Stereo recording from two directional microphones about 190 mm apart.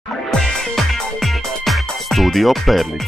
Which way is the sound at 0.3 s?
Centre (ahead or behind).